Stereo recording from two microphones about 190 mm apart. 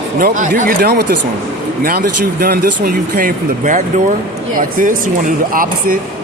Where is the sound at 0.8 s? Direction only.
60° right (ahead or behind).